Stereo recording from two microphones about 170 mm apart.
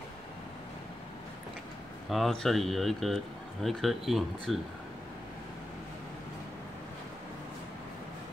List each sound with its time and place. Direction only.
2.0 s speech: centre (ahead or behind)